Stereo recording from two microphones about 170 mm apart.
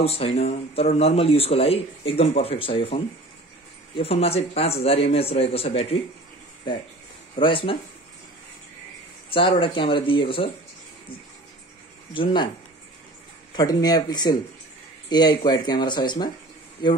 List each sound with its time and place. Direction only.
0.0 s speech: 35° left (ahead or behind)
7.3 s speech: 30° left (ahead or behind)
9.3 s speech: 30° left (ahead or behind)
12.1 s speech: 30° left (ahead or behind)
13.6 s speech: 20° left (ahead or behind)